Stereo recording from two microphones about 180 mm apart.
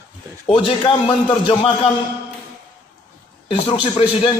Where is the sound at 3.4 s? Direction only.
30° left (ahead or behind).